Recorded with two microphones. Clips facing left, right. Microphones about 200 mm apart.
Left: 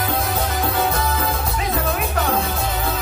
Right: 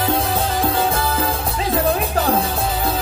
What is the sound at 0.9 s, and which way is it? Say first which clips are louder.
Music: right 2 dB; 30° right (ahead or behind).